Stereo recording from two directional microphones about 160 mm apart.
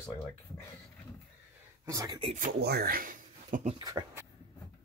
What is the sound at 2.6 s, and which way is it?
Speech, 85° right.